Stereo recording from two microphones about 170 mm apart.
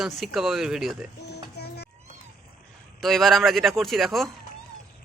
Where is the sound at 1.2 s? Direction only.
75° left (ahead or behind).